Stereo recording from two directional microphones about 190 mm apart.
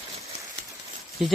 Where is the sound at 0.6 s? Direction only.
60° right (ahead or behind).